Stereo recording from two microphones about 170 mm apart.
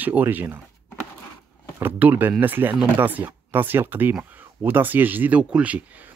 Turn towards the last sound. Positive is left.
turn(degrees=-10)  # may be behind; listen again after turning